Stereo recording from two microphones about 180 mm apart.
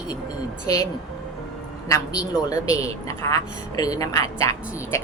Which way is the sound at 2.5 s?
20° left (ahead or behind).